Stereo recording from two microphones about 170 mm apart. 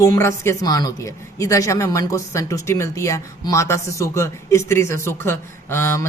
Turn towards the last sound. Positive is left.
turn(degrees=15)  # may be behind; listen again after turning